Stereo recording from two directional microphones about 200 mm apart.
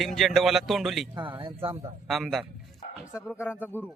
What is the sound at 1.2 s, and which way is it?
Speech, 25° right (ahead or behind).